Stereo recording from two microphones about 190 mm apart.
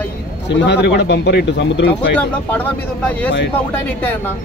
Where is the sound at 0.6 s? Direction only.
65° left (ahead or behind).